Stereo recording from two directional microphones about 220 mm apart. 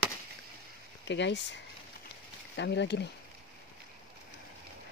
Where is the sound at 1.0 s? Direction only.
55° left (ahead or behind).